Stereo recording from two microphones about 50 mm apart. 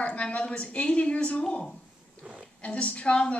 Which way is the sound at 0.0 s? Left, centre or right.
Left.